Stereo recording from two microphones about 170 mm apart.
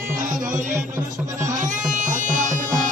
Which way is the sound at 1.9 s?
50° right (ahead or behind).